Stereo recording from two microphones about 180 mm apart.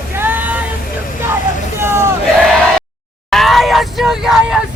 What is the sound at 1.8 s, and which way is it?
Crowd, 15° right (ahead or behind).